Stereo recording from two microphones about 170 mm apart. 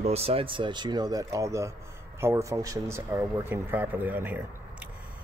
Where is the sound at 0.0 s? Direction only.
35° right (ahead or behind); by 4.5 s 10° right (ahead or behind).